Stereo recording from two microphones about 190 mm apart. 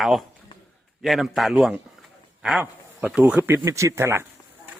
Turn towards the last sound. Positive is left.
turn(degrees=-15)  # may be behind; listen again after turning